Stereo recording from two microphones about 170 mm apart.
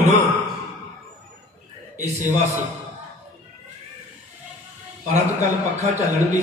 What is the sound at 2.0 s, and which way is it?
Speech, 45° right (ahead or behind).